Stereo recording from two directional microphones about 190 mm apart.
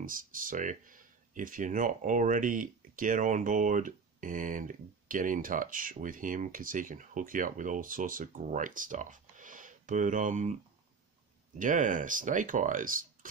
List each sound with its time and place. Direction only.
0.0 s speech: 45° right (ahead or behind)